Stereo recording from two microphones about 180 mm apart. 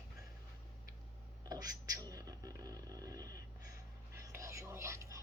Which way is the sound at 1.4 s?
20° right (ahead or behind).